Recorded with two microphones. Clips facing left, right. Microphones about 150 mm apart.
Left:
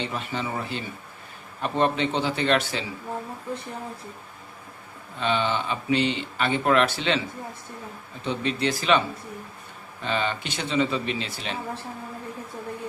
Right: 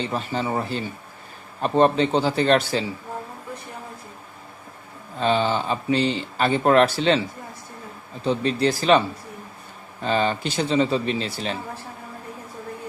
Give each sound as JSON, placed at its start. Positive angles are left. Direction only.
{"t": 0.0, "sound": "speech", "side_deg": -35}
{"t": 5.1, "sound": "speech", "side_deg": -35}
{"t": 8.2, "sound": "speech", "side_deg": -35}